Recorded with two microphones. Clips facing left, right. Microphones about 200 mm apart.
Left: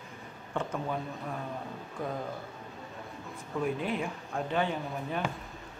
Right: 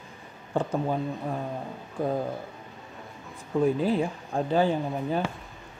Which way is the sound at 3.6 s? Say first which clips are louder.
Right 7 dB; 30° right (ahead or behind).